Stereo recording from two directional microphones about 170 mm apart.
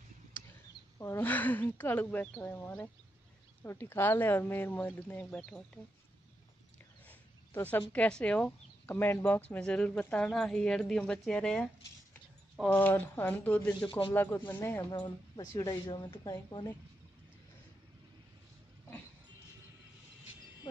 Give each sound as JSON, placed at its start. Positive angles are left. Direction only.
{"t": 0.9, "sound": "speech", "side_deg": 15}
{"t": 7.1, "sound": "a sound", "side_deg": 10}
{"t": 7.9, "sound": "speech", "side_deg": 5}
{"t": 13.7, "sound": "a woman's voice", "side_deg": 30}
{"t": 14.1, "sound": "a woman's voice", "side_deg": 10}